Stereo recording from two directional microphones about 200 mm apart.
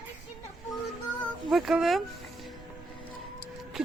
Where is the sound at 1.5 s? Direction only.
Centre (ahead or behind).